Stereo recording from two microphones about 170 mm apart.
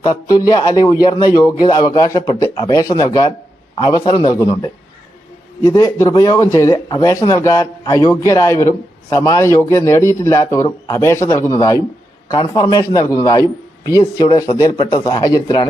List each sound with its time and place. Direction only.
0.0 s a man's voice: 20° left (ahead or behind)
14.0 s speech: 35° left (ahead or behind)
14.3 s speech: 20° left (ahead or behind)